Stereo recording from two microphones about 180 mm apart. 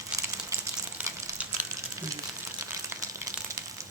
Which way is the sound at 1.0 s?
15° right (ahead or behind).